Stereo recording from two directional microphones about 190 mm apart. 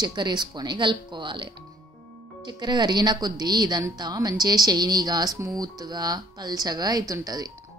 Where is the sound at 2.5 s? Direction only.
20° right (ahead or behind).